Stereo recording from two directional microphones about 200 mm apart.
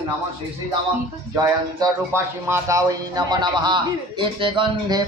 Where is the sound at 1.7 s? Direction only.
15° right (ahead or behind).